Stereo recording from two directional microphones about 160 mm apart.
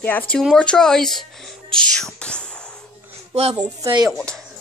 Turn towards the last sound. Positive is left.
turn(degrees=5)  # may be behind; listen again after turning